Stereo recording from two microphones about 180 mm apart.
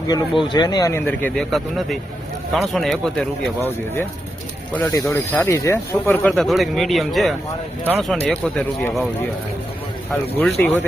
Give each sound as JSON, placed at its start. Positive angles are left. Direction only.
{"t": 0.1, "sound": "speech", "side_deg": 25}
{"t": 4.7, "sound": "speech", "side_deg": 10}
{"t": 6.3, "sound": "speech", "side_deg": 0}
{"t": 10.6, "sound": "speech", "side_deg": 10}